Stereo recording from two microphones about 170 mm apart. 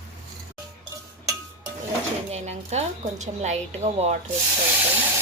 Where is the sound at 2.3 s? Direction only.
40° right (ahead or behind).